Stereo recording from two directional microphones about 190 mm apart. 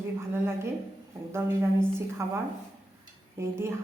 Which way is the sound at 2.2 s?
15° right (ahead or behind).